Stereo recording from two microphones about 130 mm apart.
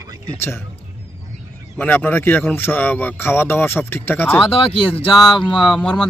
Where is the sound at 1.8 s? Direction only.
15° left (ahead or behind).